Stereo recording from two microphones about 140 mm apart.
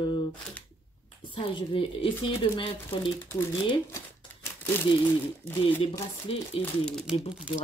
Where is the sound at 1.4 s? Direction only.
40° left (ahead or behind).